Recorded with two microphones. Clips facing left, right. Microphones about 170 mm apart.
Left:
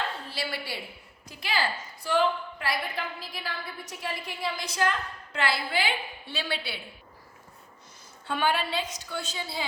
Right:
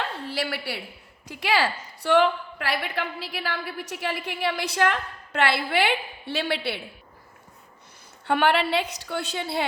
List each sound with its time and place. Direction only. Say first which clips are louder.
0.3 s a woman's voice: right 5 dB; 70° right (ahead or behind)
8.3 s a woman's voice: right 6 dB; 65° right (ahead or behind)